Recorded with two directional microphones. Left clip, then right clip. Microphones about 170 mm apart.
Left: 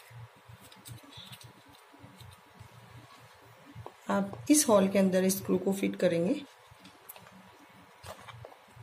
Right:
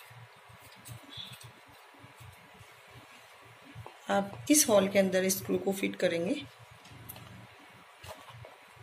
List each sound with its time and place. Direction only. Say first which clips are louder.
4.1 s a woman's voice: even; 50° left (ahead or behind)